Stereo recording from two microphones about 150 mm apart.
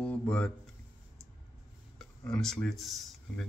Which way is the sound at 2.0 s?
5° left (ahead or behind).